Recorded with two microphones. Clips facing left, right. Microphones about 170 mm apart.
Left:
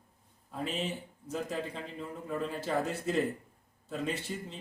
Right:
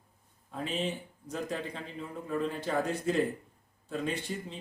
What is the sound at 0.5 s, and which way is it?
Speech, 5° left (ahead or behind).